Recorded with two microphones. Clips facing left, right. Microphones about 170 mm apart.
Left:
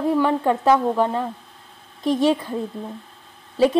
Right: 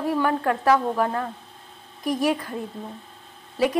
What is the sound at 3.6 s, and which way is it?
Speech, 25° left (ahead or behind).